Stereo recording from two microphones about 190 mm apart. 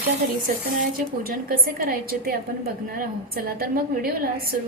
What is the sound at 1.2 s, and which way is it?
A woman's voice, 50° right (ahead or behind).